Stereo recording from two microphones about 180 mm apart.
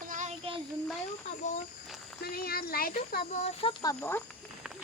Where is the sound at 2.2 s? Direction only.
55° left (ahead or behind).